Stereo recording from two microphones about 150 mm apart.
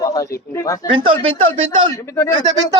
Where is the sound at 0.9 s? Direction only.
35° right (ahead or behind).